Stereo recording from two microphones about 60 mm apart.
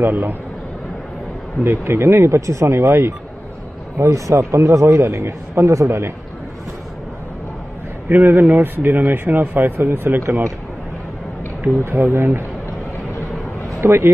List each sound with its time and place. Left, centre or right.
0.0 s speech: right
1.6 s speech: right
4.0 s a man's voice: right
8.1 s speech: right
12.0 s speech: right
13.7 s speech: right